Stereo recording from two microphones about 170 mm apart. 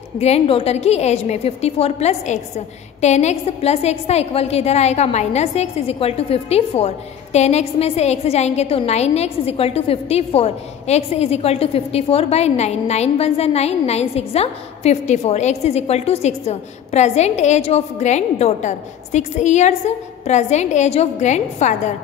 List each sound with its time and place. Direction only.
0.2 s a woman's voice: 35° left (ahead or behind)